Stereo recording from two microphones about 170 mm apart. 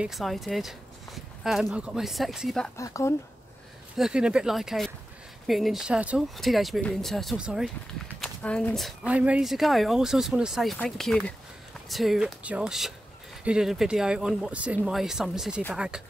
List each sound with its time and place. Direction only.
0.0 s speech: centre (ahead or behind)
2.8 s speech: 20° left (ahead or behind)
3.9 s speech: 5° right (ahead or behind)
8.2 s speech: 5° left (ahead or behind)